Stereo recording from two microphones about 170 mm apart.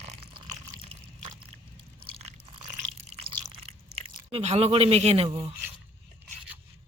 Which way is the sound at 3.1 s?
35° right (ahead or behind).